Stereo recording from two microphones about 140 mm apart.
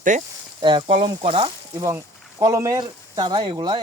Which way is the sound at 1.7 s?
20° right (ahead or behind).